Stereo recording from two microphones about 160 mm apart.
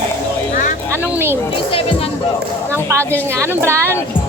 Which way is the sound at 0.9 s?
15° right (ahead or behind).